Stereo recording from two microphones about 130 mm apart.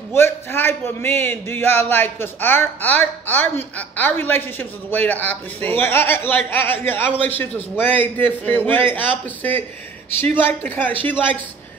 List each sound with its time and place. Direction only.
0.1 s a man's voice: 20° left (ahead or behind)